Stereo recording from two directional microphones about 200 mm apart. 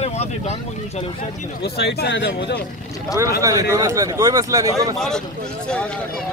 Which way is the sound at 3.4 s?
15° right (ahead or behind).